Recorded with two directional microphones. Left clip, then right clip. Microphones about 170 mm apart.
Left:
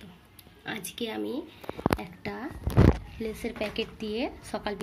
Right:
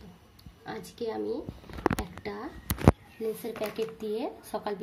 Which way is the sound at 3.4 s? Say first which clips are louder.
Left 1 dB; centre (ahead or behind).